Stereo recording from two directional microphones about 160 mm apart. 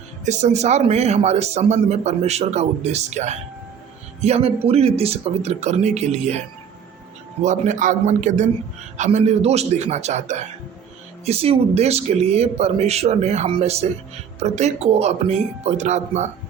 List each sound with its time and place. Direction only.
0.3 s a man's voice: 45° right (ahead or behind)
7.4 s a man's voice: 50° right (ahead or behind)